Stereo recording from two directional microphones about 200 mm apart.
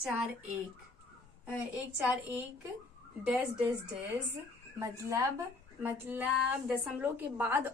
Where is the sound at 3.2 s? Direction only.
5° right (ahead or behind).